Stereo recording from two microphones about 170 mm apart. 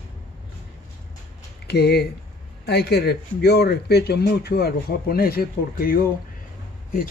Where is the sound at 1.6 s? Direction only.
70° left (ahead or behind).